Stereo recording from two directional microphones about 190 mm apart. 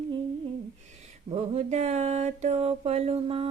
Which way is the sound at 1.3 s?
35° right (ahead or behind).